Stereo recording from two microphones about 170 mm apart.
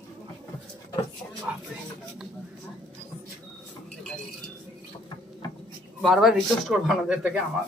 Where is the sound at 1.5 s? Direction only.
10° right (ahead or behind).